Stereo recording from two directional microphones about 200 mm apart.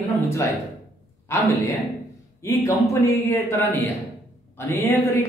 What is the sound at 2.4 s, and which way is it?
A man's voice, 15° left (ahead or behind).